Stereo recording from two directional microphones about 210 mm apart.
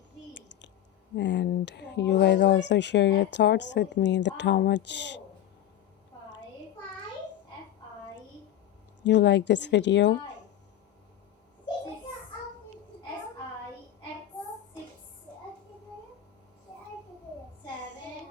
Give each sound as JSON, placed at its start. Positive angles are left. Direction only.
{"t": 1.1, "sound": "speech", "side_deg": 55}
{"t": 9.0, "sound": "speech", "side_deg": 55}